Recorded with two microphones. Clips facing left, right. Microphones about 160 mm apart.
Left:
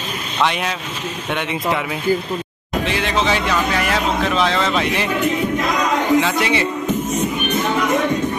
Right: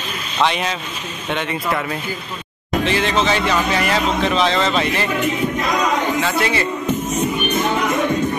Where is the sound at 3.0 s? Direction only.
10° left (ahead or behind).